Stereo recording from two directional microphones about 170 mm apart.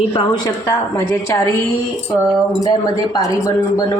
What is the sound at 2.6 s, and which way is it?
Speech, 20° left (ahead or behind).